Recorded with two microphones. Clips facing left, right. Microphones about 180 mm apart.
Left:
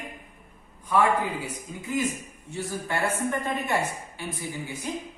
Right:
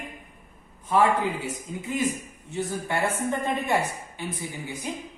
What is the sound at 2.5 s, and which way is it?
Speech, 20° right (ahead or behind).